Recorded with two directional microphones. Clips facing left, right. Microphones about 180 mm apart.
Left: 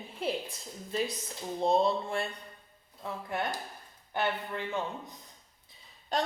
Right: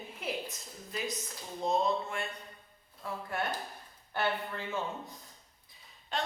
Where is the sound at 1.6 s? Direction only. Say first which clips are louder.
Left 3 dB; 30° left (ahead or behind).